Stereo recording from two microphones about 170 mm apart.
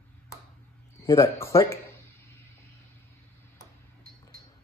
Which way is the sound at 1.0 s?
15° left (ahead or behind).